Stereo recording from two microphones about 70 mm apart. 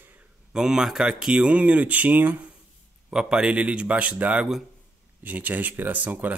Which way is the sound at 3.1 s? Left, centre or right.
Centre.